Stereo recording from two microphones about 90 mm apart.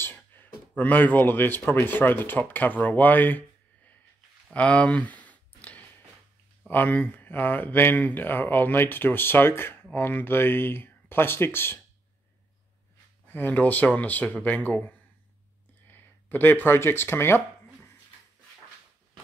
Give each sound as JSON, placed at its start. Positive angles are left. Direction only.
{"t": 0.0, "sound": "speech", "side_deg": 20}
{"t": 4.5, "sound": "a sound", "side_deg": 15}
{"t": 6.7, "sound": "speech", "side_deg": 20}
{"t": 13.3, "sound": "speech", "side_deg": 20}